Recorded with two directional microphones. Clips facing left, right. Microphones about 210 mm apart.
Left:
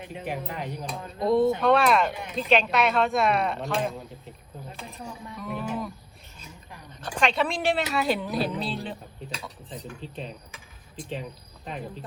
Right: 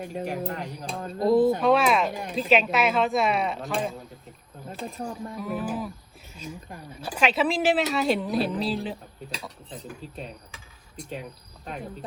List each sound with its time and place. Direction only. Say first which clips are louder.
0.0 s speech: right 6 dB; 45° right (ahead or behind)
0.3 s speech: right 2 dB; centre (ahead or behind)
4.9 s speech: right 6 dB; 50° right (ahead or behind)
5.4 s speech: right 1 dB; 5° right (ahead or behind)
6.9 s speech: right 1 dB; 5° right (ahead or behind)